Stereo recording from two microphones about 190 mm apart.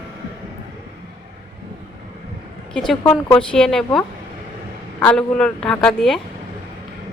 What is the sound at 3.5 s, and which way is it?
A woman's voice, centre (ahead or behind).